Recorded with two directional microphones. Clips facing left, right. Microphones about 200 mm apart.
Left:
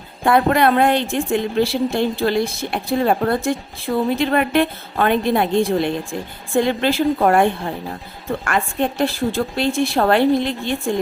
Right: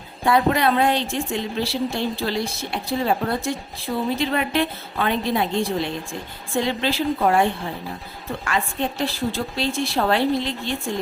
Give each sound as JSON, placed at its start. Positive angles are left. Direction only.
{"t": 0.3, "sound": "a woman's voice", "side_deg": 55}
{"t": 8.4, "sound": "a woman's voice", "side_deg": 55}